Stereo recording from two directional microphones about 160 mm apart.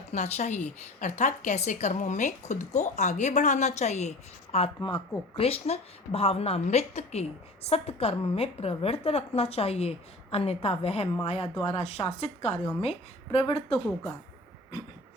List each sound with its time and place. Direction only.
0.1 s a woman's voice: 45° left (ahead or behind)